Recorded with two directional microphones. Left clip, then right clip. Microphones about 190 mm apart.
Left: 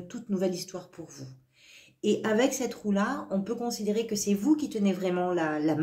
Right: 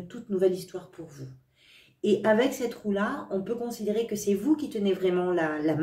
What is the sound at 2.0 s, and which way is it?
Speech, 40° left (ahead or behind).